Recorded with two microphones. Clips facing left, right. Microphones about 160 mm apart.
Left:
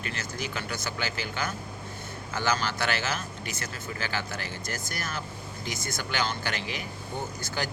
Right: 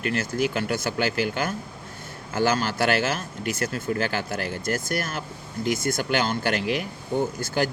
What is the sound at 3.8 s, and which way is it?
Speech, 50° right (ahead or behind).